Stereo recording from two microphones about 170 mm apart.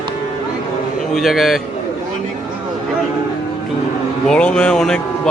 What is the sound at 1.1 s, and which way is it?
Speech, centre (ahead or behind).